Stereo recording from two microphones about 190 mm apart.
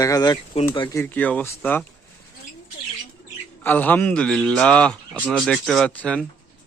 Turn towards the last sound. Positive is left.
turn(degrees=5)  # may be behind; listen again after turning